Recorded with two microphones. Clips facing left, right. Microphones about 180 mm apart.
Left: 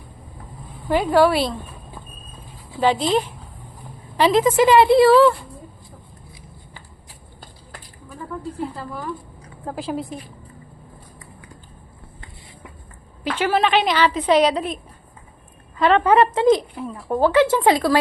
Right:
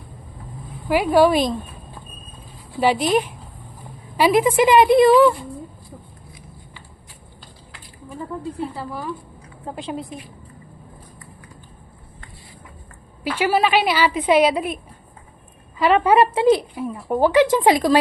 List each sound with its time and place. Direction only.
0.9 s a woman's voice: 10° right (ahead or behind)
2.8 s a woman's voice: 15° right (ahead or behind)
8.8 s a woman's voice: 10° right (ahead or behind)
9.6 s a woman's voice: centre (ahead or behind)
13.2 s a woman's voice: 10° right (ahead or behind)
15.8 s a woman's voice: 10° right (ahead or behind)